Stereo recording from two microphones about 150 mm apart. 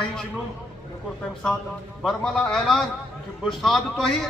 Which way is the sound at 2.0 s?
Centre (ahead or behind).